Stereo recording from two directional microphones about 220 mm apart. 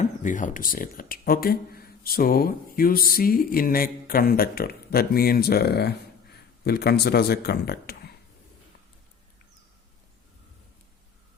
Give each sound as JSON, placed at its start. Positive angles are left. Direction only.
{"t": 0.0, "sound": "speech", "side_deg": 35}